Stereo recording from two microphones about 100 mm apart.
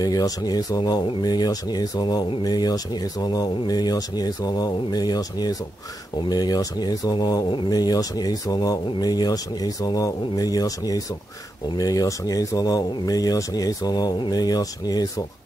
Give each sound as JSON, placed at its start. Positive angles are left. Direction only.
{"t": 0.0, "sound": "speech", "side_deg": 40}